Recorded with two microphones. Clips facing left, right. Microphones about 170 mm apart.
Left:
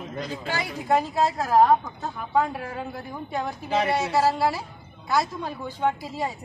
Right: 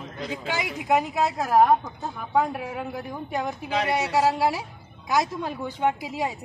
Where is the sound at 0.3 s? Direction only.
15° right (ahead or behind).